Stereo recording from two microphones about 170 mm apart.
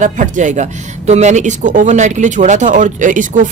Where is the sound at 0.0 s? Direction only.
50° right (ahead or behind).